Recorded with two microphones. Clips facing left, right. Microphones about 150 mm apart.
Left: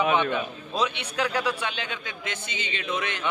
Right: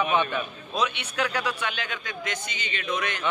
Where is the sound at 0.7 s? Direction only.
30° left (ahead or behind).